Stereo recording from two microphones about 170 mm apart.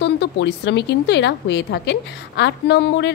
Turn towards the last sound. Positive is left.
turn(degrees=90)